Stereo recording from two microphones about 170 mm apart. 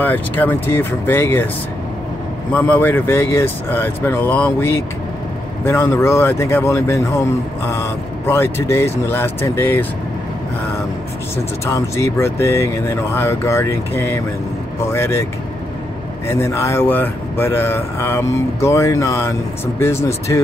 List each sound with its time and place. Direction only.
0.0 s speech: 10° left (ahead or behind)
2.5 s speech: 10° left (ahead or behind)
11.3 s speech: 15° left (ahead or behind)
16.3 s speech: 15° left (ahead or behind)